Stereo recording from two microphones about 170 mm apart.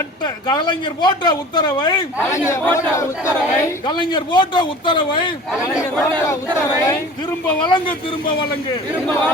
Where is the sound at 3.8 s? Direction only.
25° left (ahead or behind).